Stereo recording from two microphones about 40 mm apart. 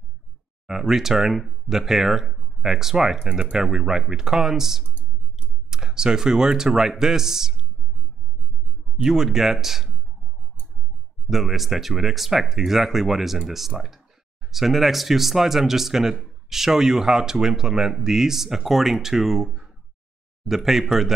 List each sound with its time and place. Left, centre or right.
0.7 s speech: centre
8.9 s speech: centre
11.2 s speech: centre